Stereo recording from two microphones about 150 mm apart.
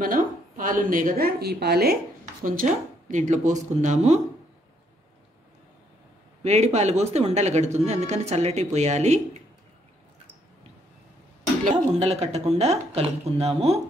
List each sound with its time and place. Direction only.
0.0 s a woman's voice: 65° right (ahead or behind); by 2.0 s 90° right
2.4 s speech: 65° right (ahead or behind)
6.4 s speech: 50° right (ahead or behind)
11.6 s speech: 50° right (ahead or behind)